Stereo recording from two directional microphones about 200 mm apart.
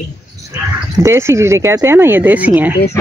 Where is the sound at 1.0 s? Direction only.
15° right (ahead or behind).